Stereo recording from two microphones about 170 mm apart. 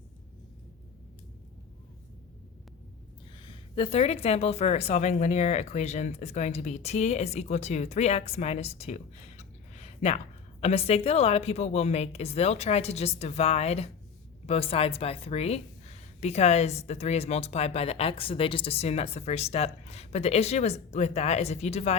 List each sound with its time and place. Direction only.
3.3 s a woman's voice: 30° left (ahead or behind)